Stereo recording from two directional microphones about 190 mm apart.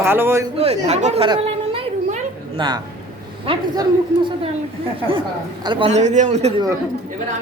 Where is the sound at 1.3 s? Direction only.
30° right (ahead or behind).